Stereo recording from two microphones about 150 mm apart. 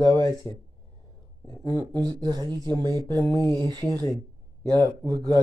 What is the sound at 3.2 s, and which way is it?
Speech, 20° left (ahead or behind).